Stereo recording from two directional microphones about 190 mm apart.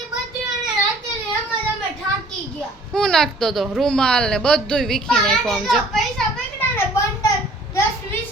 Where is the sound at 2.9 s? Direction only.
5° left (ahead or behind).